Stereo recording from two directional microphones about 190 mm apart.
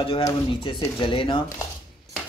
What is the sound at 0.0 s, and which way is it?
Speech, 25° left (ahead or behind).